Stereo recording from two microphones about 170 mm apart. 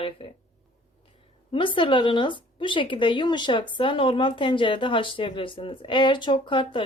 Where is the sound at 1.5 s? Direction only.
30° left (ahead or behind).